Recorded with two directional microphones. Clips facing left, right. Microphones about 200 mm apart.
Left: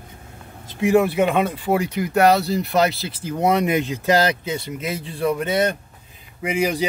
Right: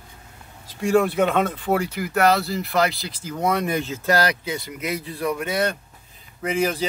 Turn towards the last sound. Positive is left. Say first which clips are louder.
# left 1 dB
turn(degrees=15)  # may be behind; listen again after turning